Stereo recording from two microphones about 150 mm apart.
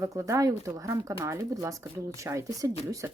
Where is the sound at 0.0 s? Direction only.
20° right (ahead or behind).